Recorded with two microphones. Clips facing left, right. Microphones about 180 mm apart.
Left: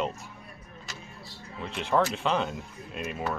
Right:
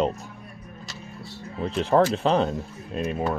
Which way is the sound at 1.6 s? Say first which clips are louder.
Right 6 dB; 35° right (ahead or behind).